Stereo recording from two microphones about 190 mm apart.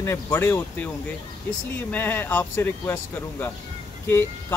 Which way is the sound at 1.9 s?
10° left (ahead or behind).